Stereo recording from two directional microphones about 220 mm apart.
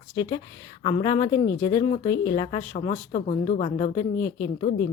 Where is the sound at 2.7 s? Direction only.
30° left (ahead or behind).